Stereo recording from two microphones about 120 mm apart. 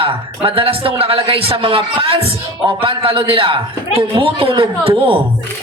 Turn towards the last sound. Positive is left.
turn(degrees=-45)  # may be behind; listen again after turning